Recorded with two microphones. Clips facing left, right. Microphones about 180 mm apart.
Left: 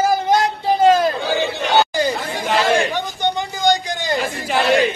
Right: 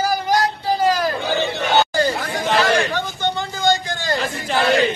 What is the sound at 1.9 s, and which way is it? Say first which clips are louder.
Chatter: even; 20° left (ahead or behind).